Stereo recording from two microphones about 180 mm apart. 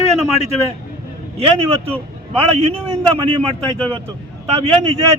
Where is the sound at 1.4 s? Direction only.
30° right (ahead or behind).